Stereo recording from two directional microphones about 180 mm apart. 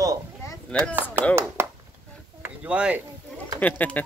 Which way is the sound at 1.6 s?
15° right (ahead or behind).